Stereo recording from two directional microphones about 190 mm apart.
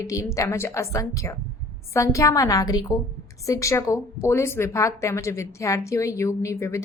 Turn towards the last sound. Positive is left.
turn(degrees=15)  # may be behind; listen again after turning